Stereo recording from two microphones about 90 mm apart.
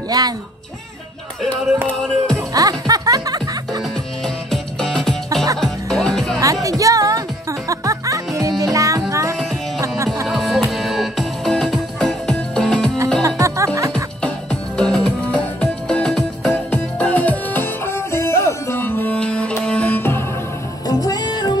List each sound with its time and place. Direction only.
0.2 s speech: 45° right (ahead or behind)
2.3 s music: 40° right (ahead or behind)
4.5 s music: 5° left (ahead or behind)
5.3 s music: 40° right (ahead or behind)
5.6 s music: 5° left (ahead or behind)
6.4 s music: 40° right (ahead or behind)
10.2 s music: centre (ahead or behind)
13.2 s music: 35° right (ahead or behind)
14.2 s music: 10° left (ahead or behind)
19.1 s music: 10° left (ahead or behind)
20.8 s music: 45° left (ahead or behind)